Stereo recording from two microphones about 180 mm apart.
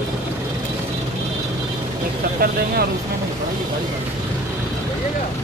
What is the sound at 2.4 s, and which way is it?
Speech, 55° right (ahead or behind).